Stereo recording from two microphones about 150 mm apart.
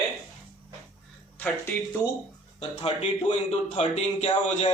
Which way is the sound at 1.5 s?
10° left (ahead or behind).